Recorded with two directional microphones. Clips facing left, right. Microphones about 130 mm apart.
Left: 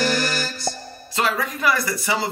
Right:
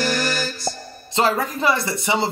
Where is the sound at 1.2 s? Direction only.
30° right (ahead or behind).